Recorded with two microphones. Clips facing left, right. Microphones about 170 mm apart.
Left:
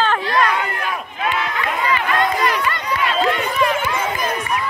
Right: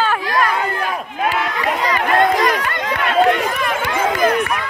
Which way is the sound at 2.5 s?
50° right (ahead or behind).